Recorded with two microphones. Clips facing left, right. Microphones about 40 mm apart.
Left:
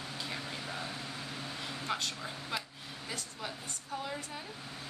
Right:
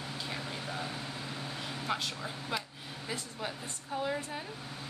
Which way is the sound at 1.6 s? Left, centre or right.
Centre.